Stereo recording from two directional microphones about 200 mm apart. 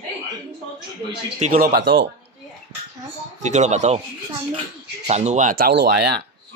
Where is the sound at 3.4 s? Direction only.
35° right (ahead or behind).